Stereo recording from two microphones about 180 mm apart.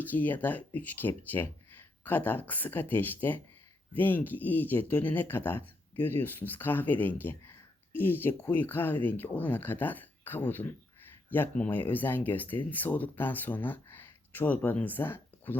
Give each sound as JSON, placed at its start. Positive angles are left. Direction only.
{"t": 0.1, "sound": "speech", "side_deg": 10}